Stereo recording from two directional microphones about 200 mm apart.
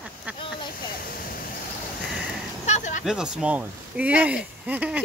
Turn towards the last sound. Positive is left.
turn(degrees=-5)  # may be behind; listen again after turning